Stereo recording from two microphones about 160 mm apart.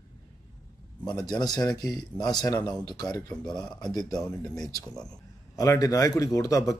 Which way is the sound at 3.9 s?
25° left (ahead or behind).